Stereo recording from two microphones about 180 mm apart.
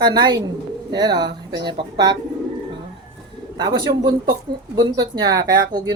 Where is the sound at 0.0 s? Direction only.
25° right (ahead or behind).